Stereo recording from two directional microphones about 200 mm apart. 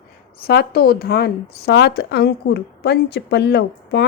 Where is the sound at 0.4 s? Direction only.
50° left (ahead or behind).